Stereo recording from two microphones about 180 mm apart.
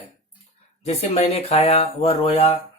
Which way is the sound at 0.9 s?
35° left (ahead or behind).